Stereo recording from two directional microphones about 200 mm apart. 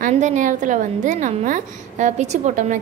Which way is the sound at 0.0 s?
40° right (ahead or behind).